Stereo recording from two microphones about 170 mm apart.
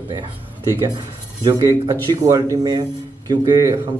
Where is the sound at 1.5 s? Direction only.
20° right (ahead or behind).